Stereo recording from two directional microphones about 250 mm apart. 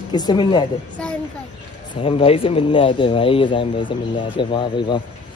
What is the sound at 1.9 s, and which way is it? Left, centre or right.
Speech, left.